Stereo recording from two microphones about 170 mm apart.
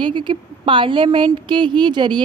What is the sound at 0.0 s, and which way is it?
A woman's voice, 30° right (ahead or behind).